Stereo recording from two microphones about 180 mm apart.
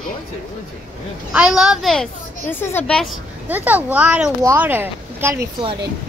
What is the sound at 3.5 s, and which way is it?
Speech, 10° right (ahead or behind).